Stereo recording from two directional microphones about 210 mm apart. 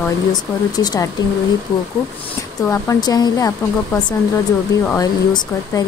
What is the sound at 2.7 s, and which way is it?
Speech, 15° left (ahead or behind).